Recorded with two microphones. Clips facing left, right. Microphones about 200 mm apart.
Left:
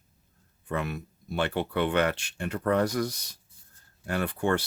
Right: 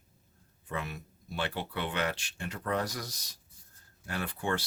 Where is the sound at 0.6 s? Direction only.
55° left (ahead or behind).